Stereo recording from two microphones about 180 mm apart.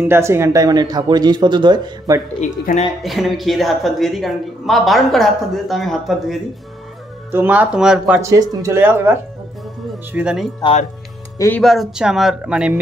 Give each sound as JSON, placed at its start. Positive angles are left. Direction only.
{"t": 0.0, "sound": "speech", "side_deg": -15}
{"t": 2.4, "sound": "speech", "side_deg": 45}
{"t": 3.0, "sound": "speech", "side_deg": 0}
{"t": 7.2, "sound": "speech", "side_deg": -10}
{"t": 8.2, "sound": "speech", "side_deg": -15}
{"t": 10.6, "sound": "speech", "side_deg": 35}
{"t": 11.3, "sound": "speech", "side_deg": 15}
{"t": 11.6, "sound": "speech", "side_deg": 0}